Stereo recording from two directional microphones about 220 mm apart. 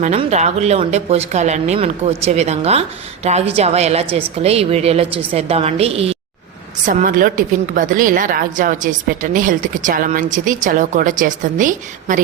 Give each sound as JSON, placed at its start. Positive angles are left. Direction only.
{"t": 0.0, "sound": "speech", "side_deg": -30}
{"t": 6.8, "sound": "a woman's voice", "side_deg": -40}